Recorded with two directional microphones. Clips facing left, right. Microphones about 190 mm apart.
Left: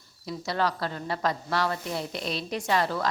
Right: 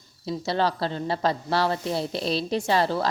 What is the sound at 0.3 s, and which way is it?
A woman's voice, 30° right (ahead or behind).